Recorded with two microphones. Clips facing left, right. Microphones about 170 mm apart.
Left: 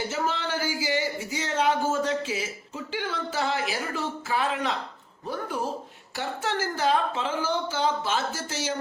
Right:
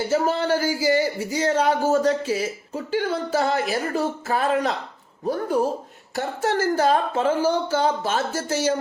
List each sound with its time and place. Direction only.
0.1 s speech: 40° right (ahead or behind)